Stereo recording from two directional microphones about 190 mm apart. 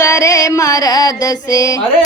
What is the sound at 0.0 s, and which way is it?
Mantra, 15° left (ahead or behind).